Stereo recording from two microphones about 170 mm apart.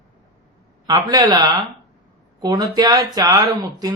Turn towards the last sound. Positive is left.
turn(degrees=-25)  # may be behind; listen again after turning